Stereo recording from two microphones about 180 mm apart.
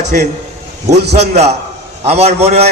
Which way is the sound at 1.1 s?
35° right (ahead or behind).